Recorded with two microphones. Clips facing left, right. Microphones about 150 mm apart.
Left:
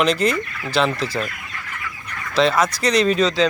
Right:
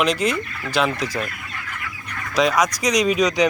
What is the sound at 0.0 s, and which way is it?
Speech, 10° right (ahead or behind).